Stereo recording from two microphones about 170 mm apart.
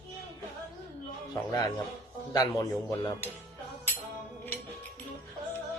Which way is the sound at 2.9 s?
15° left (ahead or behind).